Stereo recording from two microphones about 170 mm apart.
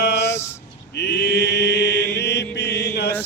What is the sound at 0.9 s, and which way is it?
Chant, 80° left.